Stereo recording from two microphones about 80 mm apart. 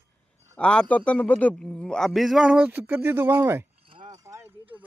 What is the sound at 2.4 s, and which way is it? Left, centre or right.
Speech, centre.